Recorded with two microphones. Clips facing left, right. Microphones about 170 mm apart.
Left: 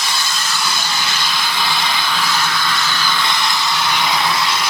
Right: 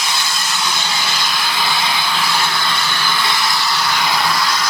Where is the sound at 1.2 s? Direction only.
5° right (ahead or behind).